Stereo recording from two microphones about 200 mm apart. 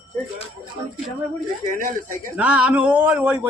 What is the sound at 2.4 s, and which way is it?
Speech, 5° right (ahead or behind).